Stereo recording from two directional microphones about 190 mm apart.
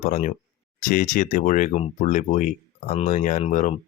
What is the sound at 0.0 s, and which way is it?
Speech, 35° left (ahead or behind).